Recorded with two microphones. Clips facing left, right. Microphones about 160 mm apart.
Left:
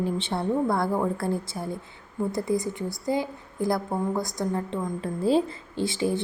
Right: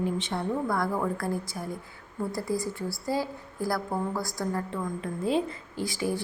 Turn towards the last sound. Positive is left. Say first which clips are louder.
# left 4 dB
turn(degrees=25)  # may be behind; listen again after turning